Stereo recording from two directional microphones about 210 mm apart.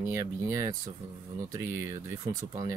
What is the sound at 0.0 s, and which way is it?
Speech, 15° right (ahead or behind).